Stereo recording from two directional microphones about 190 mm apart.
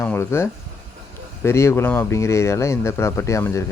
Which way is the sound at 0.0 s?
10° left (ahead or behind).